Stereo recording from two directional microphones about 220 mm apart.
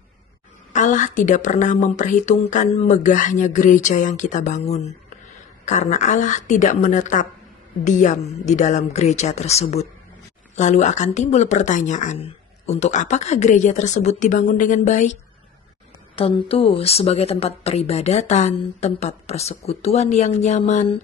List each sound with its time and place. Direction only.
0.7 s a woman's voice: 35° left (ahead or behind)
16.2 s a woman's voice: 25° left (ahead or behind)